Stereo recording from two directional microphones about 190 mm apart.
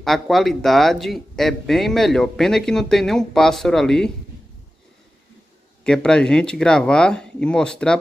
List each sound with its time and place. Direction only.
0.0 s speech: centre (ahead or behind)
5.9 s speech: 5° left (ahead or behind)